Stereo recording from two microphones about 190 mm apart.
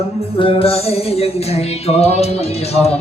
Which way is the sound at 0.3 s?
30° left (ahead or behind).